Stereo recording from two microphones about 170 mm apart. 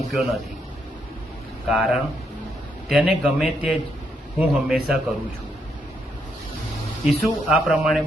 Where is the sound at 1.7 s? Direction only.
Centre (ahead or behind).